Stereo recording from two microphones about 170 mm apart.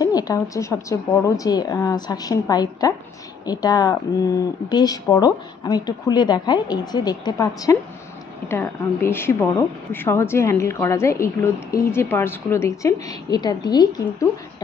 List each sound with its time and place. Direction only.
0.0 s a woman's voice: 20° left (ahead or behind)